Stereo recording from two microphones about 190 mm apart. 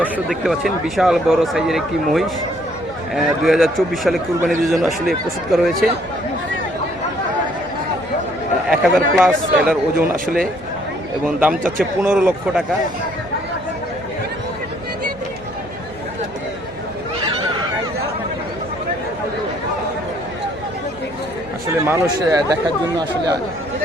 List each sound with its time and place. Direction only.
0.3 s speech: centre (ahead or behind)
8.7 s speech: centre (ahead or behind)
12.0 s a man's voice: 5° right (ahead or behind)
21.8 s speech: 20° right (ahead or behind)